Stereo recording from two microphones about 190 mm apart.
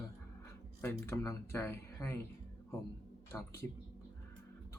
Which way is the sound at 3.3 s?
10° left (ahead or behind).